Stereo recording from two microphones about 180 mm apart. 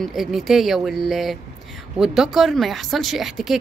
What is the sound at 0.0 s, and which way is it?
Speech, centre (ahead or behind).